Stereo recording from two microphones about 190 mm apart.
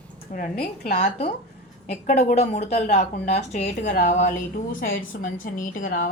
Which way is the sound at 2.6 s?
50° left (ahead or behind).